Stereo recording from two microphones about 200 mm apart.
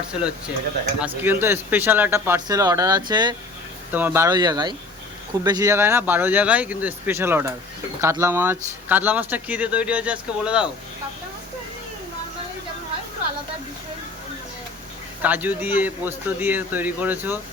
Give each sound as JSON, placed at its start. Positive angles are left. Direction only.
{"t": 0.1, "sound": "speech", "side_deg": -5}
{"t": 3.9, "sound": "speech", "side_deg": -10}
{"t": 15.2, "sound": "speech", "side_deg": -10}